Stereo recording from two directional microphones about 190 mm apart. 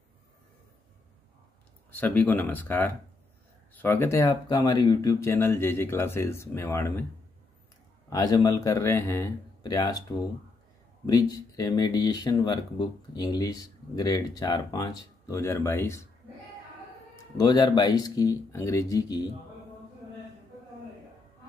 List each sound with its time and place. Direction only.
1.9 s speech: 10° left (ahead or behind)
4.2 s speech: 20° left (ahead or behind)
8.1 s speech: 20° left (ahead or behind)
11.1 s speech: 20° left (ahead or behind)
17.4 s speech: 20° left (ahead or behind)